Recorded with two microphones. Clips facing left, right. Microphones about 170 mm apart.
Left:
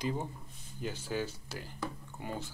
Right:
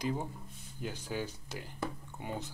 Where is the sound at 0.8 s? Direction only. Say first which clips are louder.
Left 2 dB; 15° right (ahead or behind).